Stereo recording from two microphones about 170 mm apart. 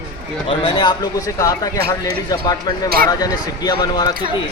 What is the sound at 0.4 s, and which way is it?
Speech, 25° left (ahead or behind).